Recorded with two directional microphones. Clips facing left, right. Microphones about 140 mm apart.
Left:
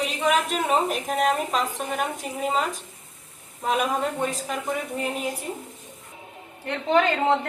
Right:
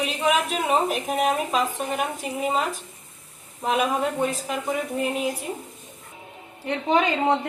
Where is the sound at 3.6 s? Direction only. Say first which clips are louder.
Right 1 dB; centre (ahead or behind).